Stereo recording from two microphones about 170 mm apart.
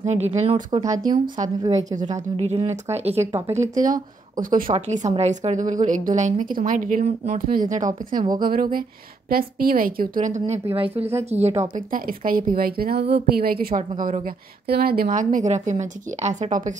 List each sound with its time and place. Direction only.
0.0 s speech: 40° right (ahead or behind)
2.3 s speech: 40° right (ahead or behind)
3.7 s a woman's voice: 50° right (ahead or behind)
4.6 s a woman's voice: 40° right (ahead or behind)
11.7 s a woman's voice: 55° right (ahead or behind)